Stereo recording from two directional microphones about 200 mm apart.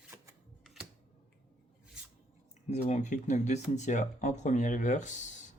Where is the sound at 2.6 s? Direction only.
35° left (ahead or behind).